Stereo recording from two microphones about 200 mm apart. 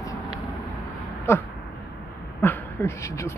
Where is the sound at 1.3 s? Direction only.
10° left (ahead or behind).